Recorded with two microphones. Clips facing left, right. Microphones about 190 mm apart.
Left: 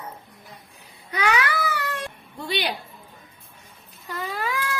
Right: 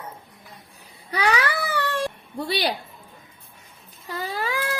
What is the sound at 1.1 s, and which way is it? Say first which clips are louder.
Baby cry: right 1 dB; 35° right (ahead or behind).